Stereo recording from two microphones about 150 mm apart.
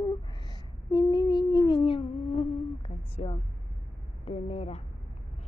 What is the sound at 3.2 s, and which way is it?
Vehicle, 45° left (ahead or behind).